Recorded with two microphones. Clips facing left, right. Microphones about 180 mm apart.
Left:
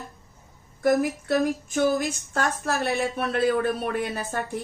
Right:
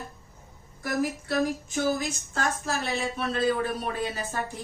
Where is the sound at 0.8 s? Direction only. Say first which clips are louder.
Left 7 dB; 55° left (ahead or behind).